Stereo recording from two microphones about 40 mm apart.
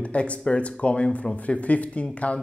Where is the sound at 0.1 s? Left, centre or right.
Left.